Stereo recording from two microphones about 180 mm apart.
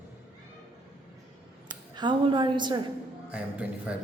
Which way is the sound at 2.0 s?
25° right (ahead or behind).